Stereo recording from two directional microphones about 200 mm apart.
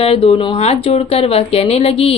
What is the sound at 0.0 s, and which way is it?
Speech, 30° left (ahead or behind).